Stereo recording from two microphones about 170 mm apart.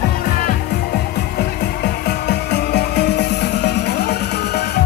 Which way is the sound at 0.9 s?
75° left (ahead or behind).